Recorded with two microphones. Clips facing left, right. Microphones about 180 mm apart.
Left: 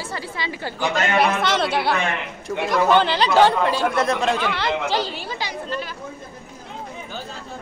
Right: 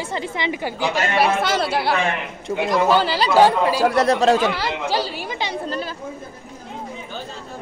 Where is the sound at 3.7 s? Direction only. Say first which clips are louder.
Right 4 dB; 35° right (ahead or behind).